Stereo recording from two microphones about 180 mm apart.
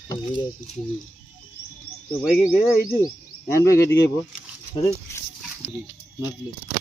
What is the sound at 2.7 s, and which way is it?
Mechanisms, 15° left (ahead or behind).